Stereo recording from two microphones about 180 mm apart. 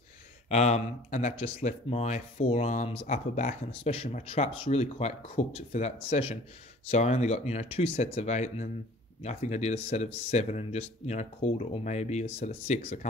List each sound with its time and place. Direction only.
0.5 s speech: 40° left (ahead or behind)